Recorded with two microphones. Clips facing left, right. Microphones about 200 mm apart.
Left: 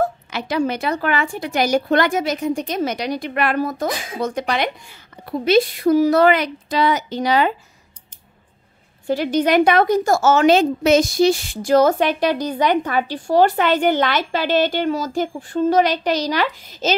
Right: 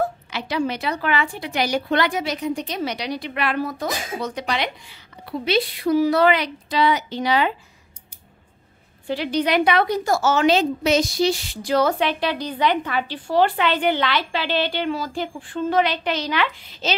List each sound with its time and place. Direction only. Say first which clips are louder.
0.0 s a woman's voice: left 3 dB; 45° left (ahead or behind)
9.0 s a woman's voice: left 4 dB; 45° left (ahead or behind)